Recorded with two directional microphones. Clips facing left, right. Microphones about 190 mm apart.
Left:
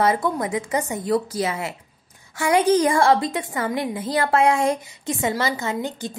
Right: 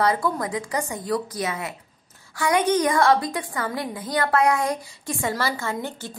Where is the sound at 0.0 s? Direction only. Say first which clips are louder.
Left 2 dB; 20° left (ahead or behind).